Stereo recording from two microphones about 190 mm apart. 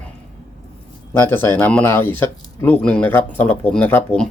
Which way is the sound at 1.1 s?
10° left (ahead or behind).